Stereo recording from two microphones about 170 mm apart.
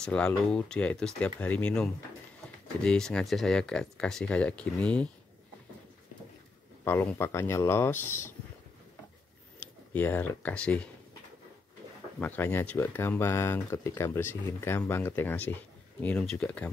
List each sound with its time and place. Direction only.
0.0 s speech: 5° left (ahead or behind)
6.8 s speech: 10° left (ahead or behind)
9.9 s speech: 10° left (ahead or behind)
12.2 s speech: 10° left (ahead or behind)